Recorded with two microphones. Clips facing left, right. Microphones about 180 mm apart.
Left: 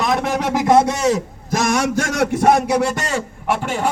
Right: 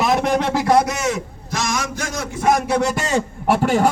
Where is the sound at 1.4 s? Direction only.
55° left (ahead or behind); by 2.4 s 70° left (ahead or behind).